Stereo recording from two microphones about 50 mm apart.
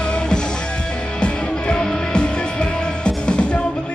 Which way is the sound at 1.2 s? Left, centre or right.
Centre.